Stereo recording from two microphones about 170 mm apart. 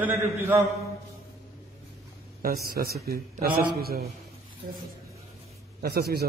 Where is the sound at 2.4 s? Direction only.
60° right (ahead or behind).